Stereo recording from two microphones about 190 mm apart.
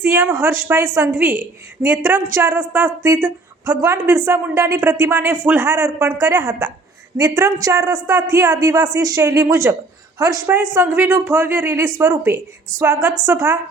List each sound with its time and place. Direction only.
0.0 s a woman's voice: 10° right (ahead or behind)